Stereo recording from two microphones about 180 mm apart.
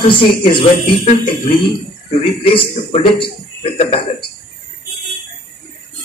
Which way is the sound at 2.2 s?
30° left (ahead or behind).